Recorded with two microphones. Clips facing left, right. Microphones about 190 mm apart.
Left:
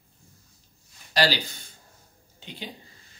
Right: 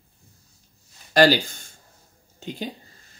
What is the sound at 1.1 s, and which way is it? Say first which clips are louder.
A woman's voice: right 8 dB; 50° right (ahead or behind).